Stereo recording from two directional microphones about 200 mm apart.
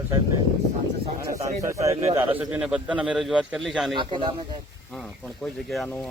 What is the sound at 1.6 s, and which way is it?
Speech, 15° right (ahead or behind).